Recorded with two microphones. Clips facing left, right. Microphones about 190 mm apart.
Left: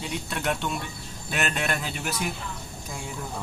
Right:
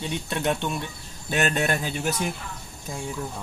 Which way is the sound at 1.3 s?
40° right (ahead or behind).